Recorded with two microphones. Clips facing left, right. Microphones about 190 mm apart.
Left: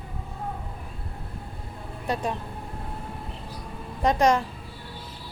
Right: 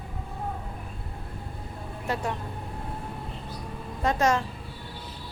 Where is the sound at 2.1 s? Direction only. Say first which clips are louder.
Left 2 dB; 15° left (ahead or behind).